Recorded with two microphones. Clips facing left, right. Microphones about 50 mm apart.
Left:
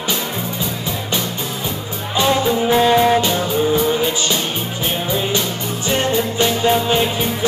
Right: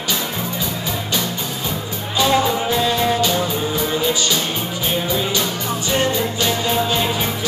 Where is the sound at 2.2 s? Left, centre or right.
Left.